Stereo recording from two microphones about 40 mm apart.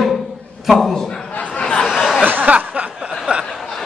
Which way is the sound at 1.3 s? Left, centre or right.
Left.